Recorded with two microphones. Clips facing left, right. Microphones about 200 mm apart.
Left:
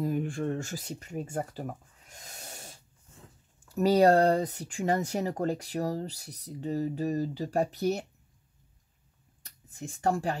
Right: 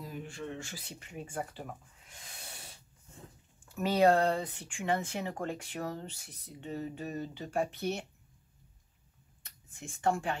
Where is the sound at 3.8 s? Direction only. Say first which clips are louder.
Left 5 dB; 40° left (ahead or behind).